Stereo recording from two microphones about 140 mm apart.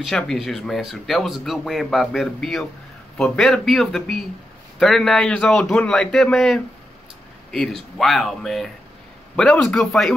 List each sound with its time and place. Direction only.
0.0 s speech: 5° left (ahead or behind)